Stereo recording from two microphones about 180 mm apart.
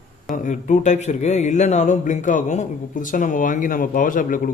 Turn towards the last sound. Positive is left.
turn(degrees=50)  # may be behind; listen again after turning